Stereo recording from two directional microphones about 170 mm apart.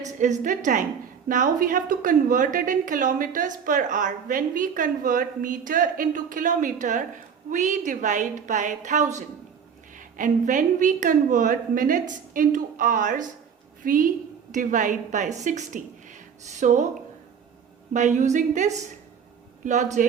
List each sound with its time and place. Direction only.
0.0 s a woman's voice: 45° right (ahead or behind)
17.9 s a woman's voice: 45° right (ahead or behind)